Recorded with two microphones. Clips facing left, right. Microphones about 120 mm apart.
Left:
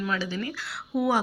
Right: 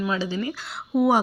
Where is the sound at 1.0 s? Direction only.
15° right (ahead or behind).